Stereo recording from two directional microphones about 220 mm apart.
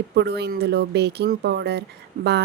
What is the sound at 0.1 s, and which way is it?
A woman's voice, 50° right (ahead or behind).